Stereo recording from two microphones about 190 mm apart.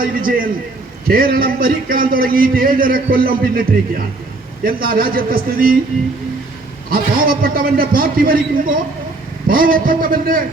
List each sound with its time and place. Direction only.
0.0 s a man's voice: 50° right (ahead or behind)
6.9 s a man's voice: 50° right (ahead or behind)